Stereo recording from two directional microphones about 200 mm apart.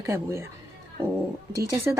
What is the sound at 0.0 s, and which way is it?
Speech, 15° right (ahead or behind).